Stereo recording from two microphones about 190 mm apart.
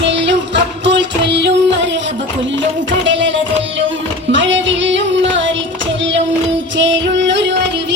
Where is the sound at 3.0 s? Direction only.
75° right (ahead or behind).